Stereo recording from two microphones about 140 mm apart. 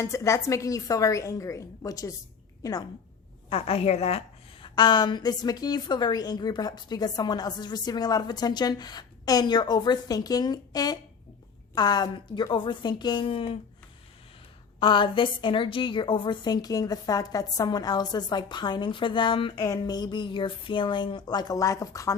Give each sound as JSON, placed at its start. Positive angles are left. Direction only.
{"t": 0.0, "sound": "a woman's voice", "side_deg": 20}
{"t": 3.5, "sound": "a woman's voice", "side_deg": 45}
{"t": 4.6, "sound": "a woman's voice", "side_deg": 35}
{"t": 14.8, "sound": "a woman's voice", "side_deg": 35}